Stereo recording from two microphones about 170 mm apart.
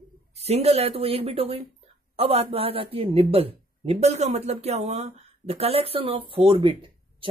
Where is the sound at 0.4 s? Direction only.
40° right (ahead or behind).